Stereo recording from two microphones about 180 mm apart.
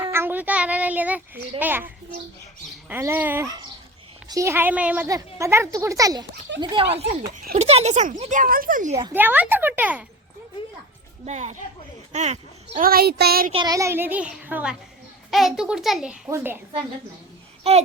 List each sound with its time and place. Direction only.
0.0 s child singing: 15° right (ahead or behind)
2.9 s a child's voice: 10° right (ahead or behind); by 9.0 s 45° right (ahead or behind)
9.1 s a child's voice: 10° right (ahead or behind)
11.3 s speech: 40° right (ahead or behind)
12.8 s speech: 55° right (ahead or behind)
13.5 s a child's voice: 25° right (ahead or behind)
17.6 s a child's voice: 35° right (ahead or behind)